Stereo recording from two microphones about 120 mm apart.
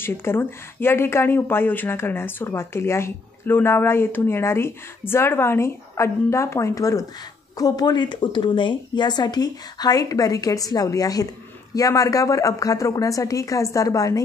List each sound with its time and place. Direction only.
0.0 s speech: 20° left (ahead or behind)